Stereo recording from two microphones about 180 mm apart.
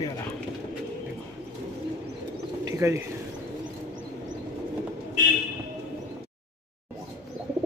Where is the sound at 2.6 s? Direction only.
15° right (ahead or behind).